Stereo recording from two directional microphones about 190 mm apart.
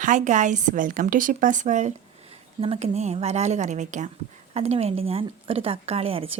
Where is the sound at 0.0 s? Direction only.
40° right (ahead or behind).